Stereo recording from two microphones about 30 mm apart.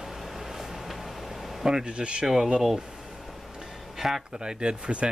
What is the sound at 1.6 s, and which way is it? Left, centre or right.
Speech, centre.